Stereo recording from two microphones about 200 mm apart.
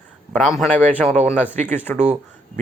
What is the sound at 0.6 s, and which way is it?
Speech, 5° left (ahead or behind).